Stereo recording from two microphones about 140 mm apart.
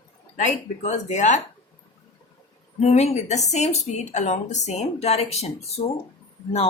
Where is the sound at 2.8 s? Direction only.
50° left (ahead or behind).